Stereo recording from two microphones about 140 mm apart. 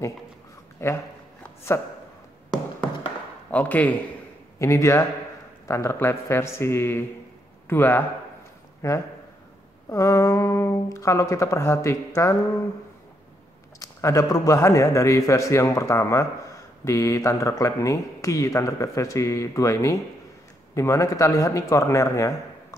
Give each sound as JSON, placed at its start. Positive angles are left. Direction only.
{"t": 0.8, "sound": "a man's voice", "side_deg": 20}
{"t": 3.5, "sound": "speech", "side_deg": 10}
{"t": 4.6, "sound": "a man's voice", "side_deg": 20}
{"t": 13.7, "sound": "a man's voice", "side_deg": 25}